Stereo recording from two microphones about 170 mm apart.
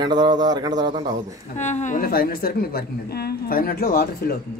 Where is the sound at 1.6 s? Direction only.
45° left (ahead or behind); by 4.4 s 60° left (ahead or behind).